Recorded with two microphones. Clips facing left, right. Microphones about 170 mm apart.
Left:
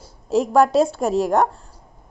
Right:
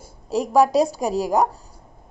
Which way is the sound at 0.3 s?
Centre (ahead or behind).